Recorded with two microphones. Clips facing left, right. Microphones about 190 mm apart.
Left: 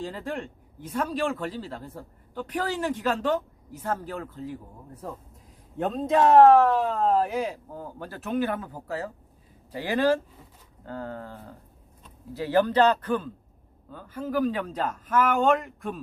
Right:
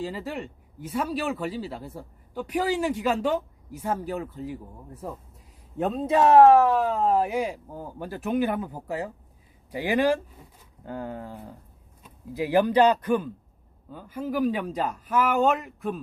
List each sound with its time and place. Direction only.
0.0 s a man's voice: 5° right (ahead or behind)